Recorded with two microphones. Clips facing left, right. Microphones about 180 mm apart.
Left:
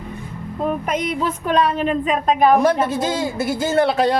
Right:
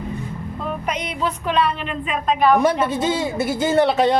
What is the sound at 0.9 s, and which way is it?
A woman's voice, 50° left (ahead or behind).